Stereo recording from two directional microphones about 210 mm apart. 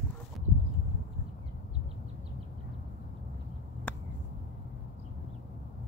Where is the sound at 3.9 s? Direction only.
5° left (ahead or behind).